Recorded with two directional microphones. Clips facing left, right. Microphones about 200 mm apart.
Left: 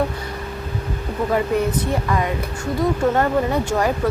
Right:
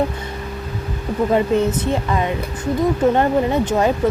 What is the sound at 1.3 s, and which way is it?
Speech, 20° right (ahead or behind).